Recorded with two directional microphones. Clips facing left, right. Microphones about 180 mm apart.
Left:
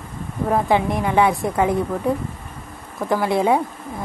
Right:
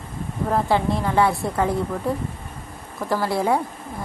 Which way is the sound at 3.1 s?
20° left (ahead or behind).